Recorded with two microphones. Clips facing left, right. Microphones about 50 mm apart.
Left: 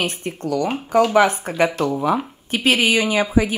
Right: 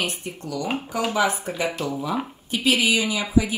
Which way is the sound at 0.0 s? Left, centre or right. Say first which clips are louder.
Left 5 dB; left.